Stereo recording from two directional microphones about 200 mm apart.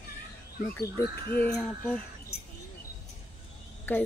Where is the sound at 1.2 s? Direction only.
50° left (ahead or behind).